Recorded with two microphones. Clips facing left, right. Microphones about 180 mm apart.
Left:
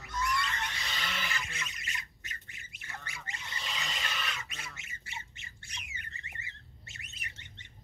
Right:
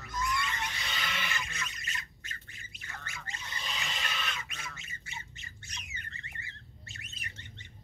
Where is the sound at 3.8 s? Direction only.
Centre (ahead or behind).